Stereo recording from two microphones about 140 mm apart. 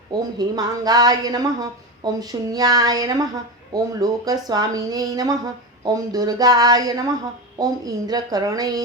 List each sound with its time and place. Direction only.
0.1 s speech: 30° right (ahead or behind)